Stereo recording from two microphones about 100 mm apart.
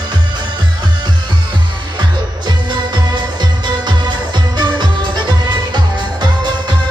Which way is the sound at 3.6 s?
45° right (ahead or behind).